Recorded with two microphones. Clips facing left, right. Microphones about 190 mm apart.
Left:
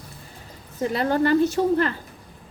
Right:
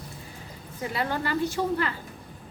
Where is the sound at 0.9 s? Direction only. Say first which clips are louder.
Left 9 dB; 45° left (ahead or behind).